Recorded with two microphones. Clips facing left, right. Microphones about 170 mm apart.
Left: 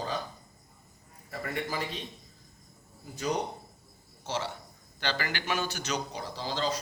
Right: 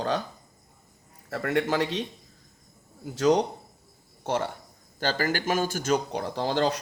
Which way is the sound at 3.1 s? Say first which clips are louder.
Right 10 dB; 90° right.